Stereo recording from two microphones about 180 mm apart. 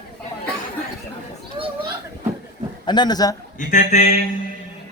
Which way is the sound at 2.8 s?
25° left (ahead or behind).